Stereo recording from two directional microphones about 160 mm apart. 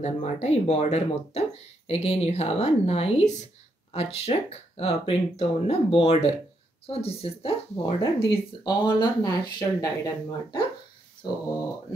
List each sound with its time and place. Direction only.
0.0 s speech: 45° left (ahead or behind); by 10.6 s 25° left (ahead or behind)